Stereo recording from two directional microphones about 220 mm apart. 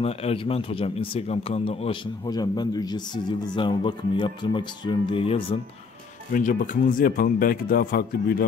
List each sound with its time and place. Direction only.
0.0 s a man's voice: 25° left (ahead or behind)
6.3 s speech: 35° left (ahead or behind)